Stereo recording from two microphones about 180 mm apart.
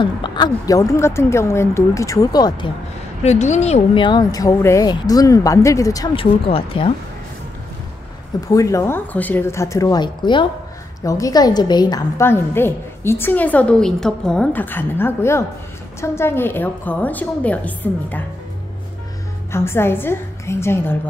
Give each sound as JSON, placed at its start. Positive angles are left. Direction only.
{"t": 0.0, "sound": "a woman's voice", "side_deg": 25}
{"t": 3.3, "sound": "speech", "side_deg": 40}
{"t": 6.1, "sound": "speech", "side_deg": 30}
{"t": 8.5, "sound": "a woman's voice", "side_deg": 20}
{"t": 19.5, "sound": "a woman's voice", "side_deg": 15}